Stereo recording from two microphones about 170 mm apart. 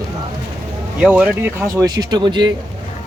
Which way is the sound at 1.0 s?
5° right (ahead or behind).